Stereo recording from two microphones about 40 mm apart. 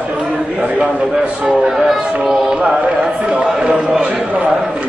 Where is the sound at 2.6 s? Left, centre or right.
Right.